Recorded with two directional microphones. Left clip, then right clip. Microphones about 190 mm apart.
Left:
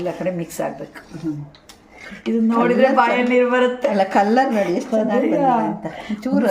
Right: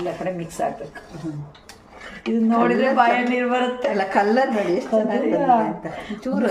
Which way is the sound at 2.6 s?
30° left (ahead or behind).